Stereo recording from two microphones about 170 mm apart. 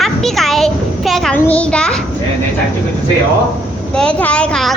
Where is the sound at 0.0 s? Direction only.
Centre (ahead or behind).